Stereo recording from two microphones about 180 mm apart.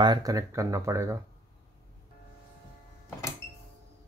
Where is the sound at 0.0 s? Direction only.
20° right (ahead or behind).